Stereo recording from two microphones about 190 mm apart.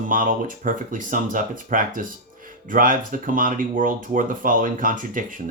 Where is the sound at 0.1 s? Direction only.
45° right (ahead or behind).